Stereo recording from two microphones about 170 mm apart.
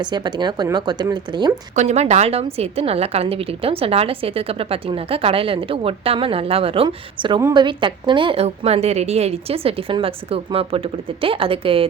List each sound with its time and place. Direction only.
0.0 s speech: 25° right (ahead or behind)
1.7 s a woman's voice: 40° right (ahead or behind)